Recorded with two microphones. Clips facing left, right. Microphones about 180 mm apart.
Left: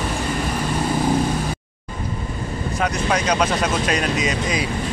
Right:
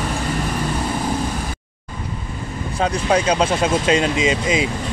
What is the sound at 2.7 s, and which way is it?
Speech, 30° right (ahead or behind).